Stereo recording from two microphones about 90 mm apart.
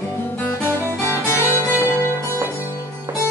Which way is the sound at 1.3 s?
30° left (ahead or behind).